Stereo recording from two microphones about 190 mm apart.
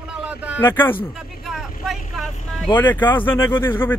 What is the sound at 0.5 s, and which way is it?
Speech, 10° left (ahead or behind).